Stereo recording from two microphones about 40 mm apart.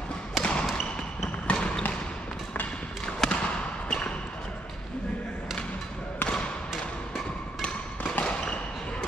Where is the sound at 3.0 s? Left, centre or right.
Centre.